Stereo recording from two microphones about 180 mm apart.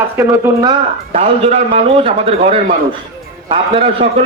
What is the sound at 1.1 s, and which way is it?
A man's voice, 35° right (ahead or behind).